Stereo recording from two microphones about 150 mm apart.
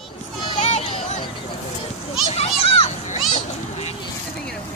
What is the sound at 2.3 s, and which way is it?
Children playing, 40° left (ahead or behind).